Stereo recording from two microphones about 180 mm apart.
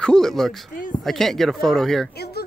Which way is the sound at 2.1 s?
60° left (ahead or behind).